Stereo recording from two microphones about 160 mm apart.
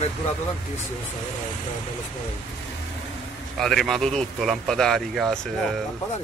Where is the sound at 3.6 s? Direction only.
Centre (ahead or behind).